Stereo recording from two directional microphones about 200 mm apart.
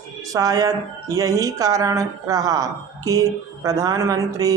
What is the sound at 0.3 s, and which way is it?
Speech, 20° right (ahead or behind).